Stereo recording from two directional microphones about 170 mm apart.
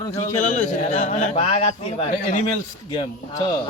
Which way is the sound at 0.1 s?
45° left (ahead or behind).